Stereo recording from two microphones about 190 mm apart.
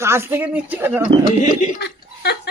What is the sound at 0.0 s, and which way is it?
Speech, 15° right (ahead or behind).